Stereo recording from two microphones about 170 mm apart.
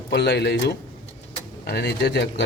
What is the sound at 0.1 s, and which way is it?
Speech, 80° left.